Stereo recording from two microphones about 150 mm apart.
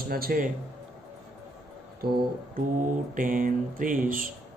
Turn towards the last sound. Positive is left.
turn(degrees=-65)  # may be behind; listen again after turning